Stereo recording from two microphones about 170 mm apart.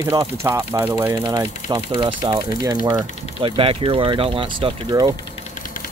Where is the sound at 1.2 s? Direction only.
25° right (ahead or behind).